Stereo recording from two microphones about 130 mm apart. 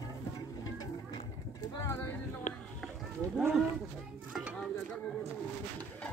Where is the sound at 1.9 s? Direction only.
20° left (ahead or behind).